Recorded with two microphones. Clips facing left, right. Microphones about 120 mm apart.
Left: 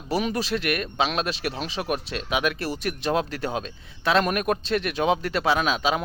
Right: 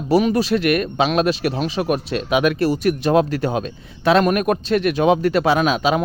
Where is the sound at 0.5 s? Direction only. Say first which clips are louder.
Right 7 dB; 60° right (ahead or behind).